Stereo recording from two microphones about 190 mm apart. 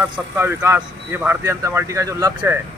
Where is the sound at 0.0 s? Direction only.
10° right (ahead or behind).